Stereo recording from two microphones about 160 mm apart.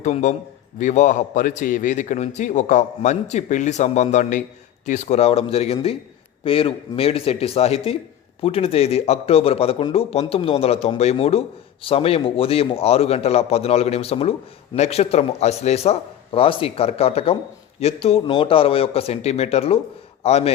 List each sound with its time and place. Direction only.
0.0 s a man's voice: 45° left (ahead or behind)